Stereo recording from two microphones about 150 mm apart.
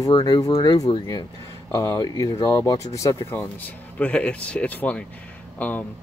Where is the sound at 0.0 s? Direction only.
25° left (ahead or behind).